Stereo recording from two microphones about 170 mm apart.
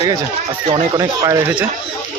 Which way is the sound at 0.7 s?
20° right (ahead or behind).